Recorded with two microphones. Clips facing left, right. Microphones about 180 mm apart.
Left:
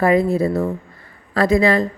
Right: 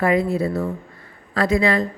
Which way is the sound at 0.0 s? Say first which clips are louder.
Left 3 dB; 40° left (ahead or behind).